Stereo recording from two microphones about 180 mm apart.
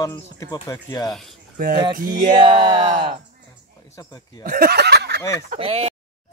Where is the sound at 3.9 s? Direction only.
20° left (ahead or behind).